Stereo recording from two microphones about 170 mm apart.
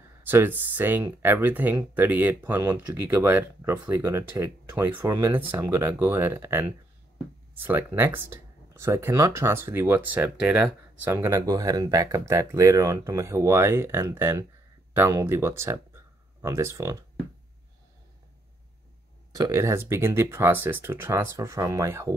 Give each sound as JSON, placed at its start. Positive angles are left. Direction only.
{"t": 0.2, "sound": "speech", "side_deg": -10}
{"t": 7.6, "sound": "speech", "side_deg": -10}
{"t": 19.3, "sound": "speech", "side_deg": -20}